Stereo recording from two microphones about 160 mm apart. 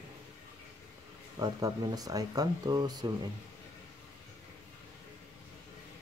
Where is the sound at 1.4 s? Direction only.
25° right (ahead or behind).